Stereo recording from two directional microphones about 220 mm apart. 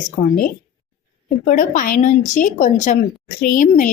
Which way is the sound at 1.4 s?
35° left (ahead or behind).